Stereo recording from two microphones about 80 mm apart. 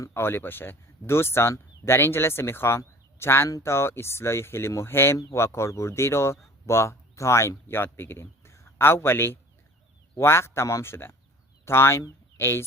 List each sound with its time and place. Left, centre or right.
0.1 s speech: left